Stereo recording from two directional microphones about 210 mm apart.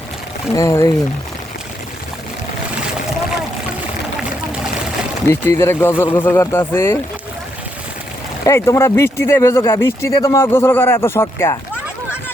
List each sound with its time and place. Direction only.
0.5 s speech: 15° left (ahead or behind)
5.3 s speech: 10° left (ahead or behind)
8.4 s speech: 15° left (ahead or behind)